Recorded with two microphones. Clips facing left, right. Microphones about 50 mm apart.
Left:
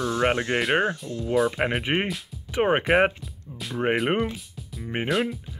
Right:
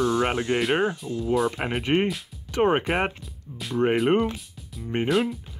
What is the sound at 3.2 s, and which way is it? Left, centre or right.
Speech, centre.